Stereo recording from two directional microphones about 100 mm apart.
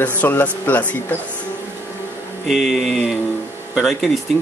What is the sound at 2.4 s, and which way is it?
A woman's voice, centre (ahead or behind).